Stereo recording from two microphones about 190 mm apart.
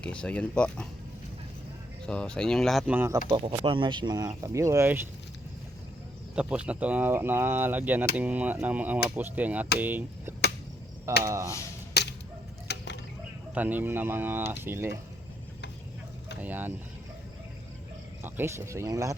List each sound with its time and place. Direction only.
0.0 s speech: 5° left (ahead or behind)
2.0 s speech: 5° left (ahead or behind)
3.2 s speech: 25° right (ahead or behind)
6.3 s speech: 5° right (ahead or behind)
12.0 s a sound: 60° left (ahead or behind)
13.5 s speech: 10° right (ahead or behind)
16.4 s speech: 10° right (ahead or behind)
18.2 s speech: 15° right (ahead or behind)